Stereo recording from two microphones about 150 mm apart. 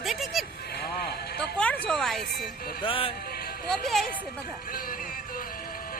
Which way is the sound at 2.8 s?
35° left (ahead or behind).